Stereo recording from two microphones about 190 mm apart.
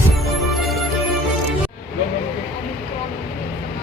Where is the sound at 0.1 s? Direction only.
Centre (ahead or behind).